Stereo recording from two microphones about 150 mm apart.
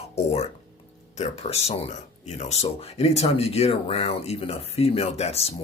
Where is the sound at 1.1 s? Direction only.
45° left (ahead or behind).